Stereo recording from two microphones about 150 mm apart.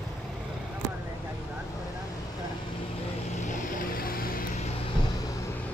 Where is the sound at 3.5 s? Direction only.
75° left (ahead or behind).